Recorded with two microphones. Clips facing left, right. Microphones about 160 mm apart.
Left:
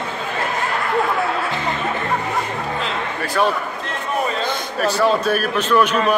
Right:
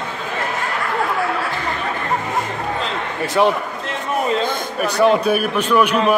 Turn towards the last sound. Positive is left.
turn(degrees=-10)  # may be behind; listen again after turning